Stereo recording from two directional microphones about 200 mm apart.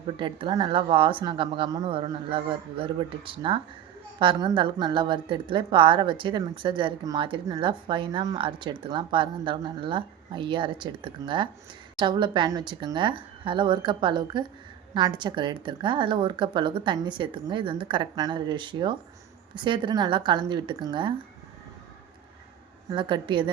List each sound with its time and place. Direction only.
0.2 s a woman's voice: 25° right (ahead or behind)
22.9 s a woman's voice: 25° right (ahead or behind)